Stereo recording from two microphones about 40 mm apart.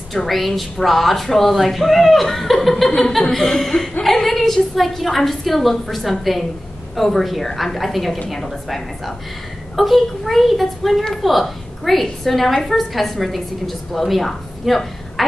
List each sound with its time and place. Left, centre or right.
0.3 s a woman's voice: centre